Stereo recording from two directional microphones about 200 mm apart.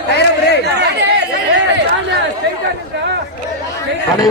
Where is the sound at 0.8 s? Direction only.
55° right (ahead or behind).